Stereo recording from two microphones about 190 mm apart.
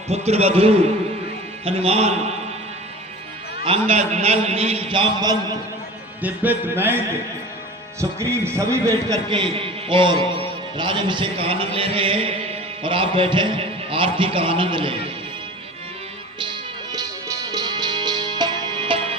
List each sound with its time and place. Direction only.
0.3 s a man's voice: 35° right (ahead or behind)
3.6 s a man's voice: 30° right (ahead or behind)
6.2 s music: 10° right (ahead or behind)
8.2 s a man's voice: 15° right (ahead or behind)
16.9 s music: 20° right (ahead or behind)